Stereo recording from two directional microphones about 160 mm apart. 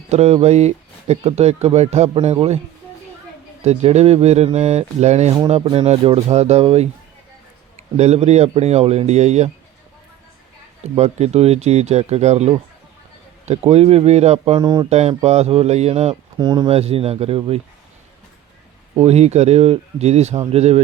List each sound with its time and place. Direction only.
0.1 s speech: 40° right (ahead or behind)
3.6 s speech: 45° right (ahead or behind)
10.9 s speech: 40° right (ahead or behind)
14.6 s speech: 25° right (ahead or behind)
14.8 s speech: 40° right (ahead or behind)
16.4 s speech: 25° right (ahead or behind)
16.7 s speech: 40° right (ahead or behind)
18.9 s speech: 40° right (ahead or behind)